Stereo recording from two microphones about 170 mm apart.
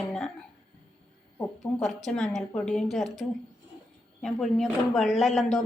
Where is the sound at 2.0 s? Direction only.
5° left (ahead or behind).